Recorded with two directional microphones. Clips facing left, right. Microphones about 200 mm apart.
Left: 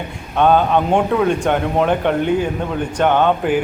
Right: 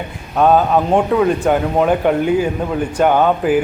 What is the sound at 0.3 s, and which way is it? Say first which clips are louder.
Speech: right 1 dB; 5° right (ahead or behind).